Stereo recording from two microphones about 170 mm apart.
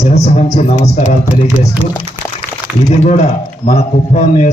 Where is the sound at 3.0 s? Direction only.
45° left (ahead or behind).